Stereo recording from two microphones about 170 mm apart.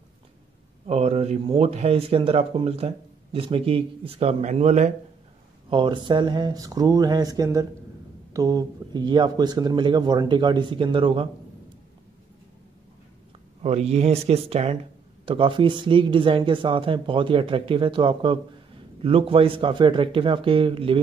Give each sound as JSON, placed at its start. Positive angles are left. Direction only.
{"t": 0.8, "sound": "speech", "side_deg": -35}
{"t": 5.7, "sound": "speech", "side_deg": -25}
{"t": 13.6, "sound": "speech", "side_deg": -40}